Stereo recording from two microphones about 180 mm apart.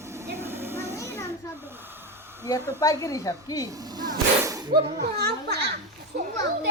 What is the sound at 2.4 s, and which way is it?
Speech, 20° left (ahead or behind).